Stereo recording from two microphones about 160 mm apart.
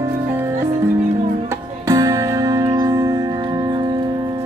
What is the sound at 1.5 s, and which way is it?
Music, 20° right (ahead or behind).